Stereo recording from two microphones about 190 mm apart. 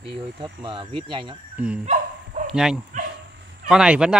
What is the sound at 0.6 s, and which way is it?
Speech, 25° right (ahead or behind).